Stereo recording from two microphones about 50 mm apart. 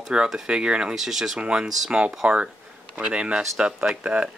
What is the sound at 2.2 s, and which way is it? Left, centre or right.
Speech, right.